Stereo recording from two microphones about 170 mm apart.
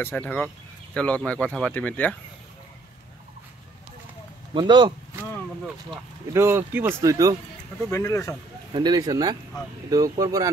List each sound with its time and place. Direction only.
0.0 s speech: 10° left (ahead or behind)
4.6 s speech: 25° right (ahead or behind)
5.9 s speech: 15° right (ahead or behind)
7.9 s speech: 15° left (ahead or behind)
8.7 s speech: 25° right (ahead or behind)